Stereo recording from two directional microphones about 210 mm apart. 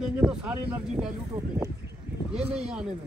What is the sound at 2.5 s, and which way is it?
Speech, 5° right (ahead or behind).